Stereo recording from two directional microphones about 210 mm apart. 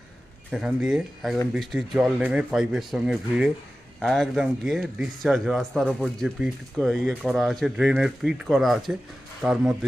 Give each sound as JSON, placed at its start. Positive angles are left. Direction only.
{"t": 0.5, "sound": "speech", "side_deg": -5}